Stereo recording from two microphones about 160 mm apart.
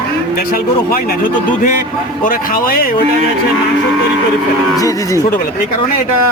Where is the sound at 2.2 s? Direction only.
60° left (ahead or behind).